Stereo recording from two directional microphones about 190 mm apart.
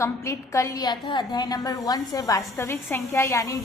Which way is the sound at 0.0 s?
15° left (ahead or behind).